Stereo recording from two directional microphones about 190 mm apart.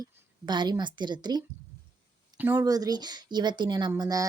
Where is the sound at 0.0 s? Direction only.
25° right (ahead or behind).